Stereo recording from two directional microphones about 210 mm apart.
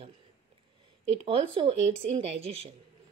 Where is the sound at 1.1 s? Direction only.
25° right (ahead or behind).